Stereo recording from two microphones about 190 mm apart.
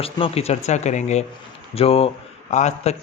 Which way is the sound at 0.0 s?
30° left (ahead or behind).